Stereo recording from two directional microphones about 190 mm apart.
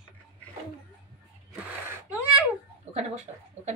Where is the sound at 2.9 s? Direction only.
35° right (ahead or behind).